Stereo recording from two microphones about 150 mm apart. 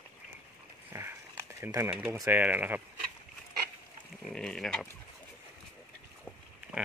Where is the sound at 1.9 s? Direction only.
10° right (ahead or behind).